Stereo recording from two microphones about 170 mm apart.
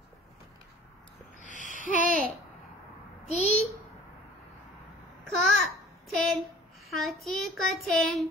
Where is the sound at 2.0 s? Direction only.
55° right (ahead or behind).